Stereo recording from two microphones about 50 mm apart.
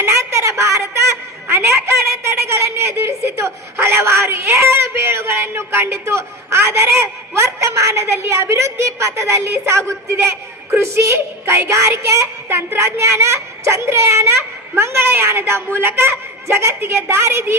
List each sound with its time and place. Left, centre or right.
0.0 s a sound: right
8.3 s a woman's voice: right
11.7 s a woman's voice: right